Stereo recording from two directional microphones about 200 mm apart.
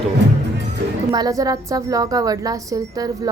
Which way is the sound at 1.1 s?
20° right (ahead or behind).